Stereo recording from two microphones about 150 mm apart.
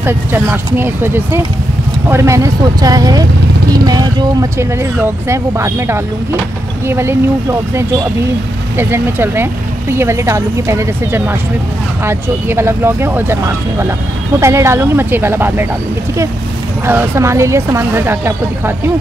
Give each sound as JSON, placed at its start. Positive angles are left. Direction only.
{"t": 0.0, "sound": "speech", "side_deg": -15}
{"t": 8.7, "sound": "speech", "side_deg": -15}
{"t": 16.8, "sound": "speech", "side_deg": -15}